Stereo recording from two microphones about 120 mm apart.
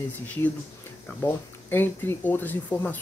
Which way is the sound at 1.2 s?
15° left (ahead or behind).